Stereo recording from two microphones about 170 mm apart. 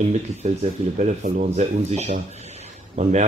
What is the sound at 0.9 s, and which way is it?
A man's voice, 45° right (ahead or behind).